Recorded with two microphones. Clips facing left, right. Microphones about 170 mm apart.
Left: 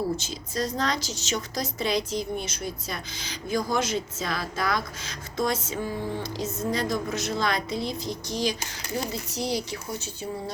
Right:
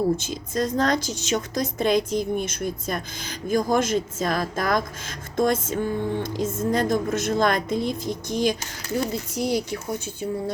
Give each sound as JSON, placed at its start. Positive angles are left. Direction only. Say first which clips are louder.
{"t": 0.2, "sound": "a woman's voice", "louder": "right 4 dB", "side_deg": -50}